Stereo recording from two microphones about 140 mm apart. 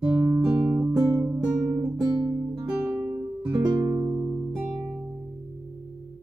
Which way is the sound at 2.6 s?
15° right (ahead or behind).